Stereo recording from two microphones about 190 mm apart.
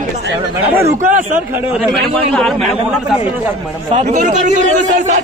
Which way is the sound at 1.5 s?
10° right (ahead or behind).